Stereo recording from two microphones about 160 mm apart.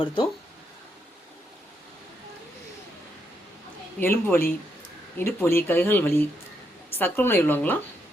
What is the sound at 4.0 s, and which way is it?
Speech, 15° left (ahead or behind).